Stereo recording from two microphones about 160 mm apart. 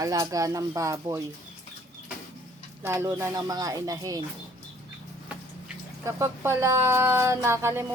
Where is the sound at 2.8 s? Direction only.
15° right (ahead or behind).